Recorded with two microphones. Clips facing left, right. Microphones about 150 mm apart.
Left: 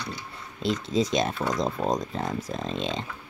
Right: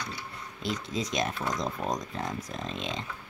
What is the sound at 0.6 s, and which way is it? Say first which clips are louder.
Speech: left 7 dB; 25° left (ahead or behind).